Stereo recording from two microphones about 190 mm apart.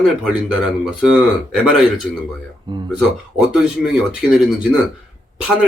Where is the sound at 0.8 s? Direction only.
5° right (ahead or behind).